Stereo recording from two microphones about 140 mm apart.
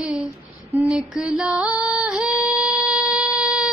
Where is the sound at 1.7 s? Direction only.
25° left (ahead or behind).